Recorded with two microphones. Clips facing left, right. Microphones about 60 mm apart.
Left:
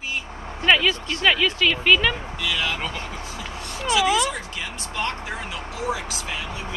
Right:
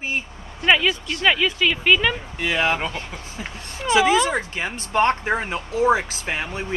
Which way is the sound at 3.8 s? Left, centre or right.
Right.